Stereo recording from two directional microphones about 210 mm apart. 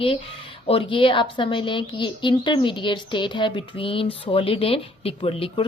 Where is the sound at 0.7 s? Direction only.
25° left (ahead or behind).